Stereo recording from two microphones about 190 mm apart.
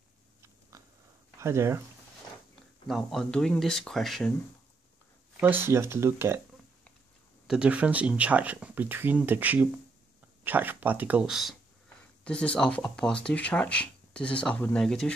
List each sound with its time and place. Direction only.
0.4 s biting: 15° right (ahead or behind)
1.4 s speech: 15° right (ahead or behind)
2.9 s speech: centre (ahead or behind)
5.4 s speech: 10° right (ahead or behind)
7.4 s speech: 5° right (ahead or behind)